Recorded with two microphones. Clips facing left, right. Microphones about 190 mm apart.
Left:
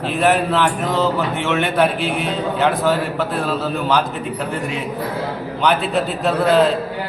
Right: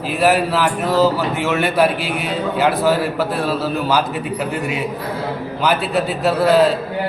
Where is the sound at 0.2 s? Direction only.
5° right (ahead or behind).